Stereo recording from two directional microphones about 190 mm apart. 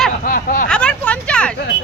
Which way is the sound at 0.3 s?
50° left (ahead or behind).